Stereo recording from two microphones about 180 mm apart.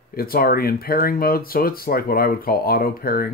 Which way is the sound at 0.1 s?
55° left (ahead or behind).